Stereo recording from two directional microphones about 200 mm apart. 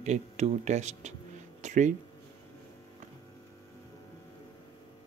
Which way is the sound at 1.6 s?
35° right (ahead or behind).